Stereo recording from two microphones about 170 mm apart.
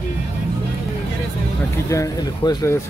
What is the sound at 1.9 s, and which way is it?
Speech, 20° left (ahead or behind).